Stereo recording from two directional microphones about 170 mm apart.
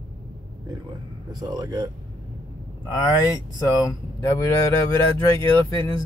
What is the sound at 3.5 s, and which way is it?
Speech, 20° left (ahead or behind).